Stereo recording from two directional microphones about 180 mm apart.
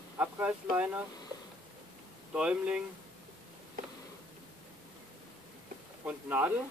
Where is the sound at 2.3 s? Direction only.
5° right (ahead or behind).